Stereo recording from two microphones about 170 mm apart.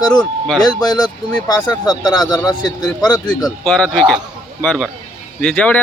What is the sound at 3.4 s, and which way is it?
Speech, 5° left (ahead or behind).